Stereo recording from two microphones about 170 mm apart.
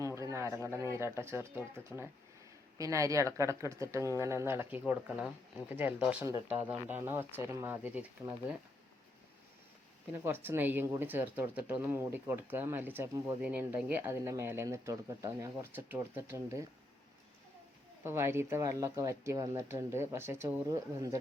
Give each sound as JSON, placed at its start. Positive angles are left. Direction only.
{"t": 0.0, "sound": "a sound", "side_deg": -20}
{"t": 0.7, "sound": "speech", "side_deg": -15}
{"t": 10.1, "sound": "speech", "side_deg": -10}
{"t": 18.0, "sound": "speech", "side_deg": -15}